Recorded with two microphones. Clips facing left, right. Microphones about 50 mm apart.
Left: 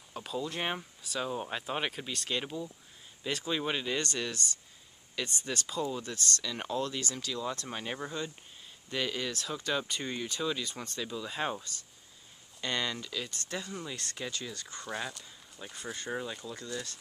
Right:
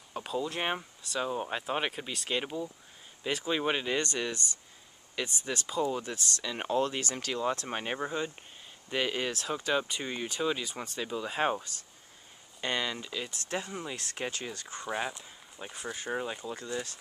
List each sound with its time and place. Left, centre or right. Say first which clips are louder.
0.1 s speech: right 3 dB; centre
9.8 s speech: right 2 dB; centre
13.5 s speech: right 3 dB; right
14.7 s speech: right 5 dB; centre
15.7 s speech: right 2 dB; centre